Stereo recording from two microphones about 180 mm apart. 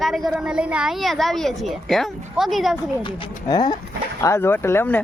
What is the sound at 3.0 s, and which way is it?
Speech, 25° left (ahead or behind).